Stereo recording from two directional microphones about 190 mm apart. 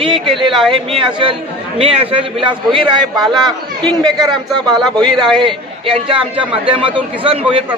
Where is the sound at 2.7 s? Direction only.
Centre (ahead or behind).